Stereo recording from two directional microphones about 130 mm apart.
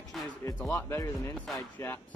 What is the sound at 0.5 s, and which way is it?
Speech, 15° left (ahead or behind).